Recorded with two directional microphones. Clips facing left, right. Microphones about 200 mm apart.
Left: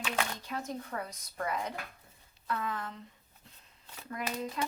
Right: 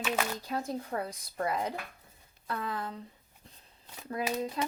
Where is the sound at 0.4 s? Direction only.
35° right (ahead or behind).